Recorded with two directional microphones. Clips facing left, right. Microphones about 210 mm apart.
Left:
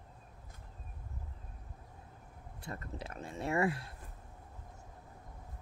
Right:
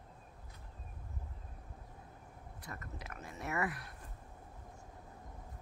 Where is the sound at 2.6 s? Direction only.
30° left (ahead or behind).